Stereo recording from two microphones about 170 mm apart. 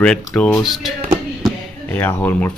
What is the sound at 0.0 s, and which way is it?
Speech, 5° left (ahead or behind).